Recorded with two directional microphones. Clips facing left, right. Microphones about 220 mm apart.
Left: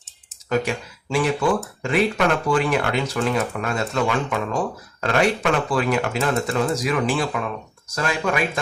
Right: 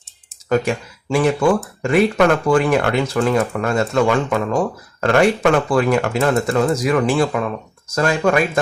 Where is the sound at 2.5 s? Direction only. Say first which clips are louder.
Right 5 dB; 45° right (ahead or behind).